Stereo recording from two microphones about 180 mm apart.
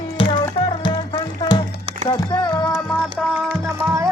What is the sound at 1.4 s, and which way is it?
Music, 25° left (ahead or behind).